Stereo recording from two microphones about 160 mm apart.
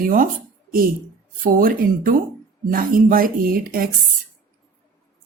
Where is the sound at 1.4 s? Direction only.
60° right (ahead or behind).